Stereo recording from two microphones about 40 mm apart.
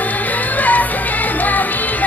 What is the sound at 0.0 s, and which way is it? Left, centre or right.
Music, left.